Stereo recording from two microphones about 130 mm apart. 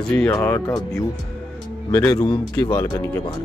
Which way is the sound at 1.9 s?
30° left (ahead or behind).